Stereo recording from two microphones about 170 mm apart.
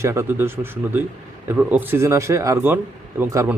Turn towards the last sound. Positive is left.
turn(degrees=-15)  # may be behind; listen again after turning